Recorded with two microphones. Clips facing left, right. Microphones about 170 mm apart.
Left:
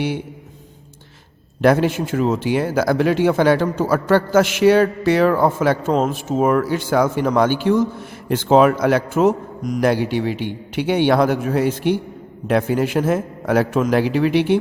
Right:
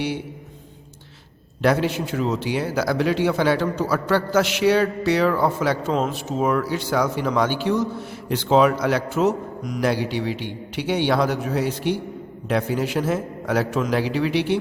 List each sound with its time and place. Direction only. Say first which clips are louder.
1.6 s speech: left 5 dB; 50° left (ahead or behind)